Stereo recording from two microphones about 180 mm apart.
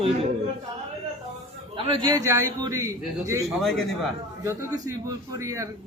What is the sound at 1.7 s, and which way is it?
A man's voice, 25° right (ahead or behind).